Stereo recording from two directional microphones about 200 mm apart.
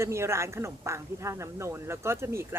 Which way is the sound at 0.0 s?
15° right (ahead or behind).